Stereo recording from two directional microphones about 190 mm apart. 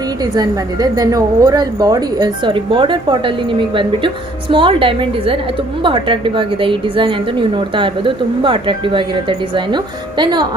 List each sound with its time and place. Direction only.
0.2 s a woman's voice: 20° right (ahead or behind)